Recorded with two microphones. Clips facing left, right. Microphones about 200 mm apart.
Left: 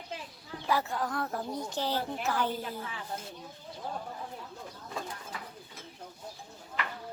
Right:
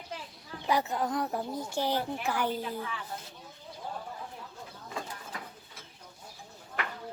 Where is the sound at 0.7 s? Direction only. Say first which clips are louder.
Right 2 dB; 20° right (ahead or behind).